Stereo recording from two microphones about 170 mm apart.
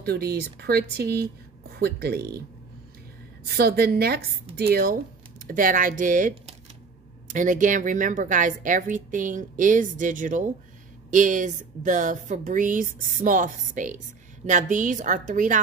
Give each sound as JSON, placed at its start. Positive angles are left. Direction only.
{"t": 0.0, "sound": "speech", "side_deg": -65}
{"t": 3.4, "sound": "speech", "side_deg": -70}
{"t": 5.5, "sound": "speech", "side_deg": -55}